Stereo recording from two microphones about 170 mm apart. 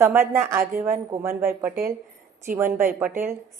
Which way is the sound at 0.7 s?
50° right (ahead or behind).